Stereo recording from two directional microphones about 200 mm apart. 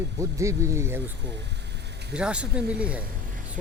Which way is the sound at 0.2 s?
15° right (ahead or behind).